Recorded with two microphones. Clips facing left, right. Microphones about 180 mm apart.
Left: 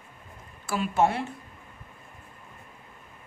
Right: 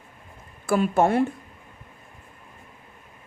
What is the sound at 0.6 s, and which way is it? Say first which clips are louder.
Speech: right 4 dB; 50° right (ahead or behind).